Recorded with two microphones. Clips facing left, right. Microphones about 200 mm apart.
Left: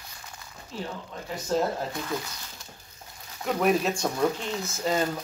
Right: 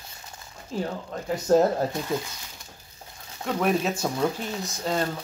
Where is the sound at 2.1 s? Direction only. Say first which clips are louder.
Right 4 dB; 25° right (ahead or behind).